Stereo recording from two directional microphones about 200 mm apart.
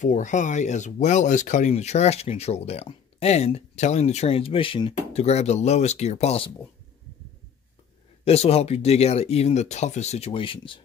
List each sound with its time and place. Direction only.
0.0 s speech: 40° left (ahead or behind)
8.3 s speech: 30° left (ahead or behind)